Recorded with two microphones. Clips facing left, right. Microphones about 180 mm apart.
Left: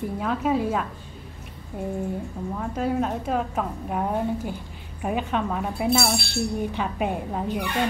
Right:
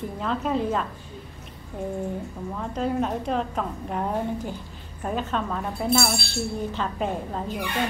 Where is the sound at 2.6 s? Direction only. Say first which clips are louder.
Left 1 dB; 5° left (ahead or behind).